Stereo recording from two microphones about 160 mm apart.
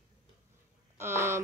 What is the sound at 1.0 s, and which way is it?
Speech, 15° right (ahead or behind).